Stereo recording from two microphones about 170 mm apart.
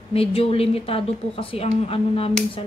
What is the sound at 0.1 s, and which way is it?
A woman's voice, 35° left (ahead or behind).